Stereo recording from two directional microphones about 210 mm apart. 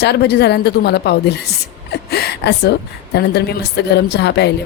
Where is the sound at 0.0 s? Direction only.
50° left (ahead or behind).